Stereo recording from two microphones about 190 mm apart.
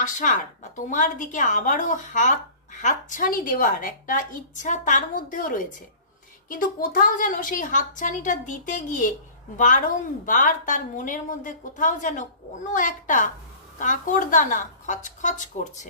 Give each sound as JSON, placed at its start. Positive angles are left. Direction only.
{"t": 0.0, "sound": "a woman's voice", "side_deg": 40}